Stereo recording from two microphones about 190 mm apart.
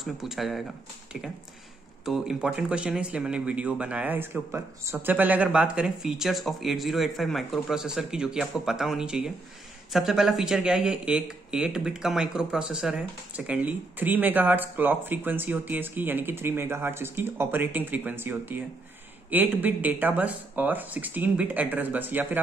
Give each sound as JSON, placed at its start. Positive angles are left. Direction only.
{"t": 0.0, "sound": "speech", "side_deg": 0}
{"t": 2.0, "sound": "speech", "side_deg": -5}